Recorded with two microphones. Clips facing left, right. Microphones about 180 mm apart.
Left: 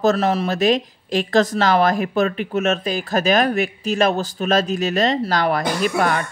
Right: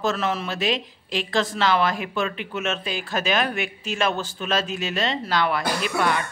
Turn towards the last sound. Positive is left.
turn(degrees=45)  # may be behind; listen again after turning